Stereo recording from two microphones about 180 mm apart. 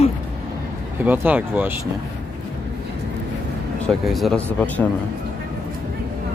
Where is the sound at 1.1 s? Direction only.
10° right (ahead or behind).